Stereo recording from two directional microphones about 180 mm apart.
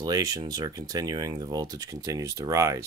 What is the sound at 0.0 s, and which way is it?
Speech, 20° right (ahead or behind).